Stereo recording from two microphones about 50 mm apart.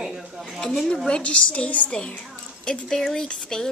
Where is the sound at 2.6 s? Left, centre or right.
Centre.